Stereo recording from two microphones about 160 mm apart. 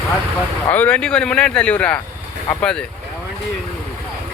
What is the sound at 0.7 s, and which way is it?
Speech, 10° left (ahead or behind).